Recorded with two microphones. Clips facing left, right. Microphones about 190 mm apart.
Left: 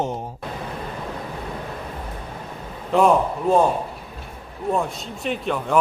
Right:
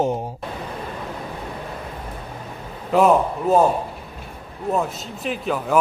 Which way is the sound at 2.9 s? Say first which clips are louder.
Right 1 dB; 5° right (ahead or behind).